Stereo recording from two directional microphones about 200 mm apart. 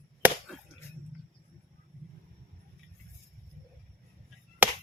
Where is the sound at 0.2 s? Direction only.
10° right (ahead or behind).